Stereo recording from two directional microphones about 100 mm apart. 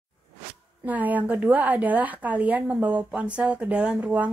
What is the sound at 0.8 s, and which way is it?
A woman's voice, 15° right (ahead or behind).